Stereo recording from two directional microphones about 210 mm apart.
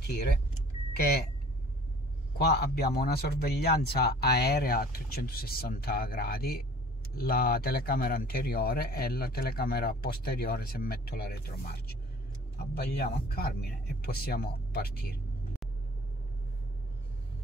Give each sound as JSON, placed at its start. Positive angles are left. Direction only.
{"t": 0.0, "sound": "speech", "side_deg": 50}
{"t": 2.3, "sound": "a man's voice", "side_deg": 50}
{"t": 12.7, "sound": "a man's voice", "side_deg": 50}